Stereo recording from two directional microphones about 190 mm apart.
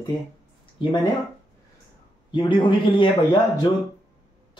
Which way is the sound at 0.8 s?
25° left (ahead or behind).